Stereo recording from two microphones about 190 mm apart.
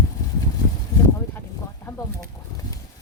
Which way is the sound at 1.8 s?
20° left (ahead or behind).